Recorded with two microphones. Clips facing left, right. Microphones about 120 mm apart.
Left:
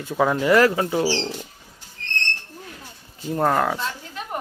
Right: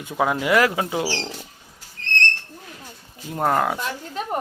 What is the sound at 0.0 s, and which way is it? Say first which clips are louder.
Speech: left 2 dB; 10° right (ahead or behind).